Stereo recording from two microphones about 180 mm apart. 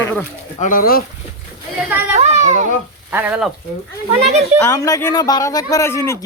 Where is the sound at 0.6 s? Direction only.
50° left (ahead or behind).